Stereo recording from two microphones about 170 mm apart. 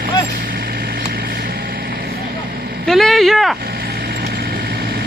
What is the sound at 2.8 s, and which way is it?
Vehicle, centre (ahead or behind).